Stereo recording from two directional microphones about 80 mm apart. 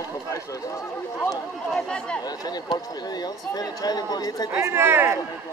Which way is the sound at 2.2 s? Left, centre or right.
Left.